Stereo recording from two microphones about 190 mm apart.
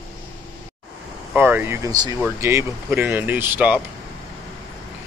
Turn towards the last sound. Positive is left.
turn(degrees=-10)  # may be behind; listen again after turning